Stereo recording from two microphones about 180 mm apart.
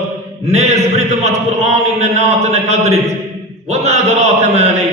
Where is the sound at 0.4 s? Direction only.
35° right (ahead or behind).